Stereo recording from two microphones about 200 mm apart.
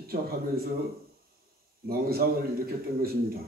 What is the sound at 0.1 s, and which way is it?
Speech, 50° right (ahead or behind).